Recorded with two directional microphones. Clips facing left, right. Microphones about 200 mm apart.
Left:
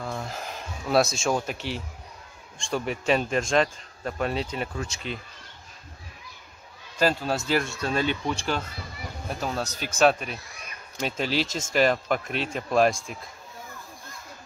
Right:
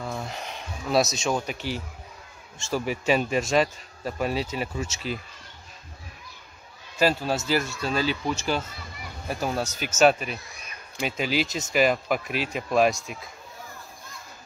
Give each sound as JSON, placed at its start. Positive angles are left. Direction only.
{"t": 0.0, "sound": "a sound", "side_deg": 0}
{"t": 1.1, "sound": "speech", "side_deg": 0}
{"t": 7.0, "sound": "speech", "side_deg": -5}